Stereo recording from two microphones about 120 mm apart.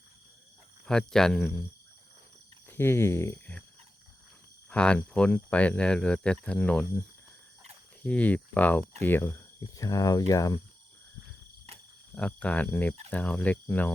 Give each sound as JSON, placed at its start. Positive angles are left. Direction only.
{"t": 0.9, "sound": "speech", "side_deg": 5}
{"t": 2.6, "sound": "speech", "side_deg": 20}
{"t": 4.7, "sound": "speech", "side_deg": 10}
{"t": 8.0, "sound": "speech", "side_deg": 10}
{"t": 8.8, "sound": "speech", "side_deg": -65}
{"t": 9.0, "sound": "speech", "side_deg": 15}
{"t": 9.6, "sound": "speech", "side_deg": 30}
{"t": 12.1, "sound": "speech", "side_deg": 10}